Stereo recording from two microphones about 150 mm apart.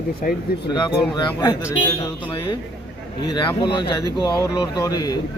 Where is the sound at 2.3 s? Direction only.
30° left (ahead or behind).